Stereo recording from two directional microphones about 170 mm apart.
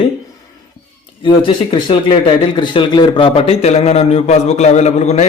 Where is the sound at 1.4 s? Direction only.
30° left (ahead or behind).